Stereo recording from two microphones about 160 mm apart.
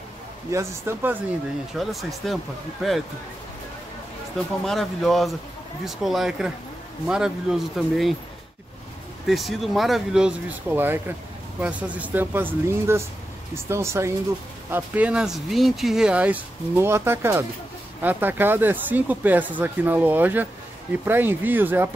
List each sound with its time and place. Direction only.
0.5 s speech: 15° right (ahead or behind)
1.8 s speech: centre (ahead or behind)
4.6 s speech: centre (ahead or behind)
9.3 s speech: centre (ahead or behind)